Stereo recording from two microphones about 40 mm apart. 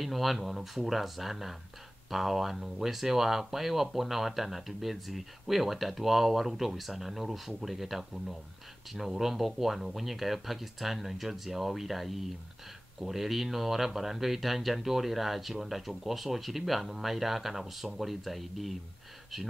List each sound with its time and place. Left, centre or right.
0.0 s speech: centre